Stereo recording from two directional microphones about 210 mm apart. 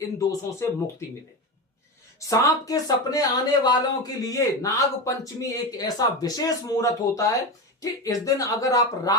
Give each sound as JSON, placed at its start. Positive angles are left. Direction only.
{"t": 0.2, "sound": "speech", "side_deg": 15}
{"t": 2.3, "sound": "speech", "side_deg": 15}